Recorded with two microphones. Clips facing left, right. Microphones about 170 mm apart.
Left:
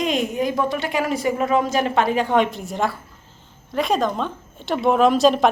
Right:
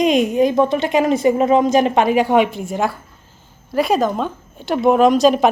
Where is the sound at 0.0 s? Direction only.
20° right (ahead or behind).